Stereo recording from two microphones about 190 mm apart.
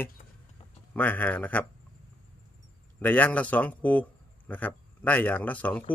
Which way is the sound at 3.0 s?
10° left (ahead or behind).